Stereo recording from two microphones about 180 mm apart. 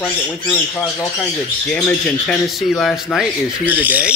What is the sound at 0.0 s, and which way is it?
Speech, 10° left (ahead or behind).